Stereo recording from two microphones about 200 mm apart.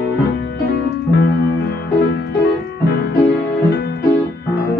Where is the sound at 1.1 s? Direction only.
55° left (ahead or behind).